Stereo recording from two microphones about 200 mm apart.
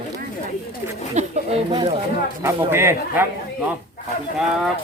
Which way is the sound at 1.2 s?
35° right (ahead or behind).